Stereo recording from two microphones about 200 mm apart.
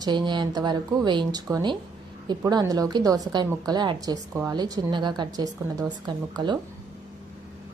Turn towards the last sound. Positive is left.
turn(degrees=-20)  # may be behind; listen again after turning